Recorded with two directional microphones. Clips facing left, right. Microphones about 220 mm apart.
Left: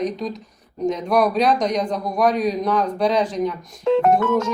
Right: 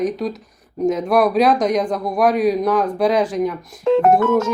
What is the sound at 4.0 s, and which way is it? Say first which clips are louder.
Speech: right 4 dB; 45° right (ahead or behind).